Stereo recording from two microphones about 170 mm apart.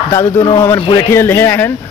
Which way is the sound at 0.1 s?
15° left (ahead or behind).